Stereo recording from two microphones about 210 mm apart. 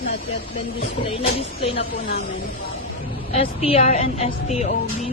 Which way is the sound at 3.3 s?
25° left (ahead or behind).